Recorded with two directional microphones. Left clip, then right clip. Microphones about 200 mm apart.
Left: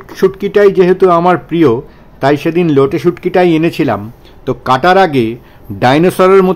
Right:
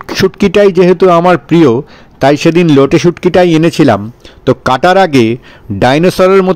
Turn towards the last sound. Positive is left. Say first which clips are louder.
# right 1 dB
turn(degrees=-30)  # may be behind; listen again after turning